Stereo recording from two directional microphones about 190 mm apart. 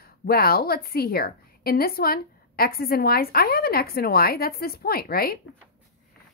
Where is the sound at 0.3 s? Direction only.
55° left (ahead or behind).